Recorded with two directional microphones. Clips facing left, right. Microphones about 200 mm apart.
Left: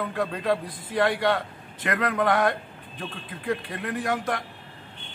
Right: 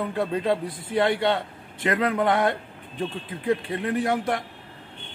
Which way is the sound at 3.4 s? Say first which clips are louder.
Right 4 dB; 25° right (ahead or behind).